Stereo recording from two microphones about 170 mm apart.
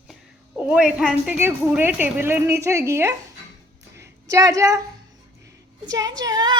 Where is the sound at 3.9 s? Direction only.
20° right (ahead or behind).